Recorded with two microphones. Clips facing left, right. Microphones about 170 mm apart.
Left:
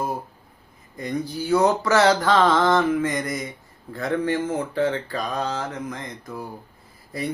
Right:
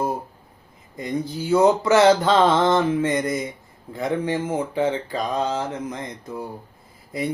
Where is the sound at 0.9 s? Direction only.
20° right (ahead or behind).